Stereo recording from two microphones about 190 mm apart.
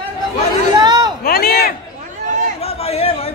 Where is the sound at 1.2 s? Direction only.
50° left (ahead or behind).